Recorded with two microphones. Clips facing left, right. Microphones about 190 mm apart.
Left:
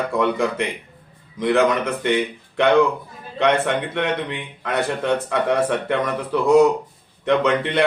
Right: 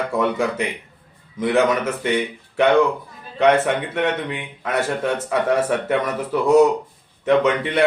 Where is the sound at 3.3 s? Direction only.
5° right (ahead or behind).